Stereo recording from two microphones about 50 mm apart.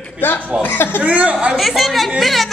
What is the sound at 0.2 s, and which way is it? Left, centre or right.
Speech, left.